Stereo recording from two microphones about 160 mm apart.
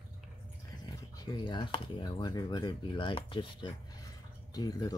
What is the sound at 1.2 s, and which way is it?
Speech, 25° left (ahead or behind).